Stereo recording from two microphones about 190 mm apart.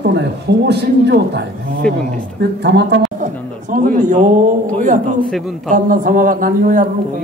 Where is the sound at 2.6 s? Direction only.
60° right (ahead or behind).